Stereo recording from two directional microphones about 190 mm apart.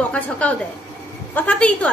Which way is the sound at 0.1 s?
5° left (ahead or behind).